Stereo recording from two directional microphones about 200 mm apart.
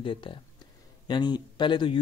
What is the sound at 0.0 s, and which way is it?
Speech, 25° left (ahead or behind).